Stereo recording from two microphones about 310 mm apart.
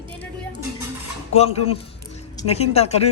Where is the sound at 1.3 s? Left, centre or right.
Centre.